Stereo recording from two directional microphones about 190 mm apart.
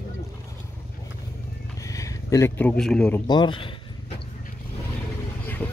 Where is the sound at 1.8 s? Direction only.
15° left (ahead or behind).